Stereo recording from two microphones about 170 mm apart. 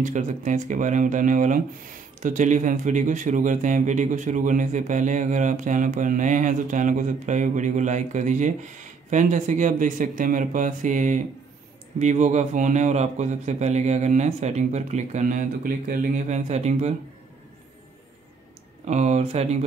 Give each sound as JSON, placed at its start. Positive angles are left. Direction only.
{"t": 0.0, "sound": "speech", "side_deg": -45}
{"t": 18.9, "sound": "speech", "side_deg": -40}